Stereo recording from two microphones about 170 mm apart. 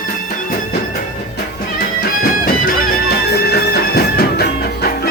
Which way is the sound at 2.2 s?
65° left (ahead or behind).